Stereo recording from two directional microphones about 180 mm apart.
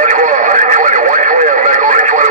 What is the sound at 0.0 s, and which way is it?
Radio, 45° right (ahead or behind).